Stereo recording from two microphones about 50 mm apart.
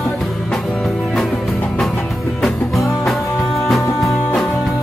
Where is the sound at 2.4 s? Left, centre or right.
Centre.